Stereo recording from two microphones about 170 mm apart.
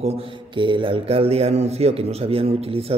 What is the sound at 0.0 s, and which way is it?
Speech, 35° right (ahead or behind).